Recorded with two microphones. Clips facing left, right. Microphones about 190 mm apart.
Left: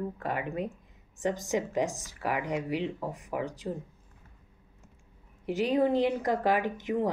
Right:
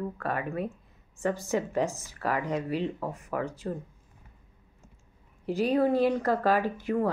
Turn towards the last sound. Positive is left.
turn(degrees=15)  # may be behind; listen again after turning